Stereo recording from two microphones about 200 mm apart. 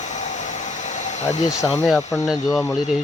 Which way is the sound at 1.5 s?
15° left (ahead or behind).